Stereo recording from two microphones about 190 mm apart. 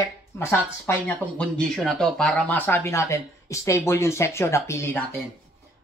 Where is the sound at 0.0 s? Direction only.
15° left (ahead or behind).